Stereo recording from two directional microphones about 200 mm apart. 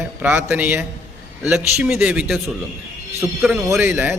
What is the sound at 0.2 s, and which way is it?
A man's voice, 10° right (ahead or behind).